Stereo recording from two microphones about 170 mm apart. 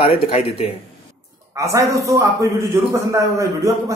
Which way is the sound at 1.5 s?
20° right (ahead or behind).